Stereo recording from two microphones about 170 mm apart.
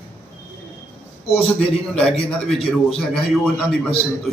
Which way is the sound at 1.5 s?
5° left (ahead or behind).